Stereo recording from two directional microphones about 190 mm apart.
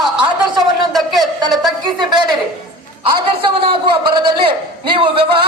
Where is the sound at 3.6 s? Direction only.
25° right (ahead or behind).